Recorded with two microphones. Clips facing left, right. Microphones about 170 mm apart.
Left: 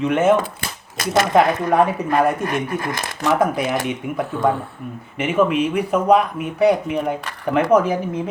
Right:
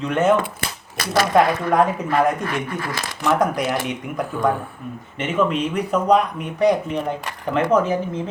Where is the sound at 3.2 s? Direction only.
5° left (ahead or behind).